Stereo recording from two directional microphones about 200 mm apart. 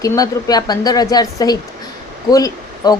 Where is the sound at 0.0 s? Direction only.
15° left (ahead or behind).